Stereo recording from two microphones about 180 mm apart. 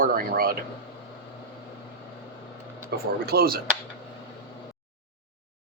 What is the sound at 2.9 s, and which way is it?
Speech, 65° right (ahead or behind).